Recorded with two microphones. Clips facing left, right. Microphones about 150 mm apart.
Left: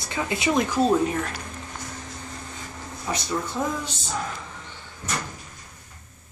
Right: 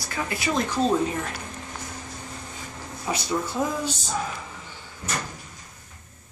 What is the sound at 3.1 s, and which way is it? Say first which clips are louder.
Speech: right 1 dB; 20° right (ahead or behind).